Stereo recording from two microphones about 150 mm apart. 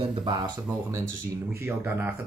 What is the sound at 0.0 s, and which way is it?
Speech, 35° right (ahead or behind).